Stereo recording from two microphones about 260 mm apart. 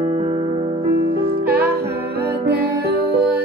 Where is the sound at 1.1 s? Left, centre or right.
Right.